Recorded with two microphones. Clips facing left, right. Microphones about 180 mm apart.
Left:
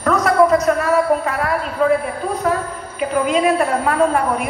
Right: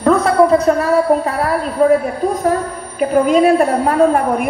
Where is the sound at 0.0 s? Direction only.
30° right (ahead or behind).